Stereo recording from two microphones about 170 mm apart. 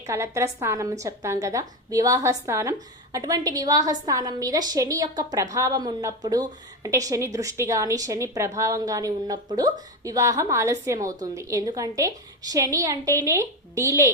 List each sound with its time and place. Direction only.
0.0 s a woman's voice: 15° right (ahead or behind)